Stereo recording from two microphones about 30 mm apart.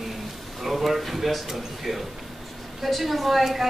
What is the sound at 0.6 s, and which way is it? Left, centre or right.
A woman's voice, centre.